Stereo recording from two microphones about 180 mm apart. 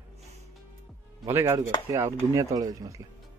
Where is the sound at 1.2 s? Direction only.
15° right (ahead or behind).